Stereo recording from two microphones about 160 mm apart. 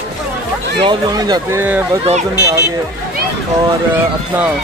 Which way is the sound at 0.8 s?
25° right (ahead or behind).